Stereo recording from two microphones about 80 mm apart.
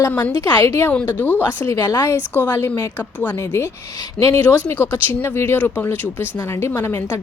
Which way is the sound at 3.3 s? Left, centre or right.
Left.